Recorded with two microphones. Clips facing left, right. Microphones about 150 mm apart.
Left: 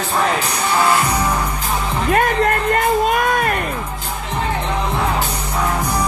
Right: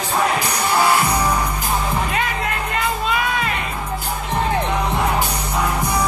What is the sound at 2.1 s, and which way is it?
Music, 50° left (ahead or behind).